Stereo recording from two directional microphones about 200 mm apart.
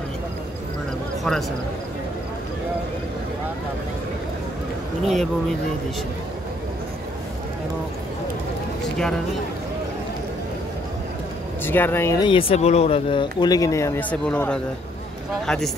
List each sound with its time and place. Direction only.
5.0 s speech: centre (ahead or behind)
8.8 s a sound: 5° left (ahead or behind)
11.6 s speech: 10° left (ahead or behind)